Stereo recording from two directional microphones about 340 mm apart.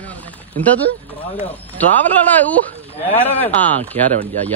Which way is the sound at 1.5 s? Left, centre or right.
Centre.